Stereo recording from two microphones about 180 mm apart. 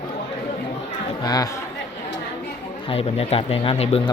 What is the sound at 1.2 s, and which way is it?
Speech, 20° left (ahead or behind).